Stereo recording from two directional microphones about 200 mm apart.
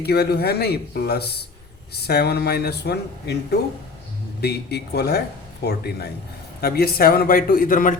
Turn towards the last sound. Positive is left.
turn(degrees=45)  # may be behind; listen again after turning